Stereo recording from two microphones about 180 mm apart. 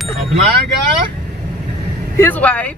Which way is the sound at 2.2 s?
10° left (ahead or behind).